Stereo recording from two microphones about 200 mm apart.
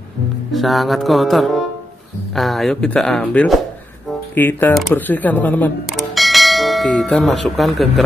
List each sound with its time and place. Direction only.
0.5 s speech: centre (ahead or behind)